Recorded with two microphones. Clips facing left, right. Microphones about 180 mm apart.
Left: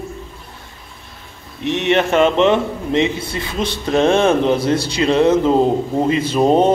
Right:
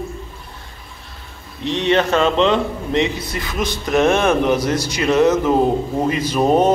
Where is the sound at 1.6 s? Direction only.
20° left (ahead or behind).